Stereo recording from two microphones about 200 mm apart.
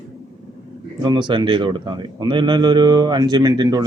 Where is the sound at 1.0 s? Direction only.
25° right (ahead or behind).